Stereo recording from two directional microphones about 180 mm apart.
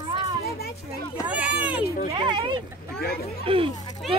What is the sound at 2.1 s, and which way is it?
Speech, 30° right (ahead or behind).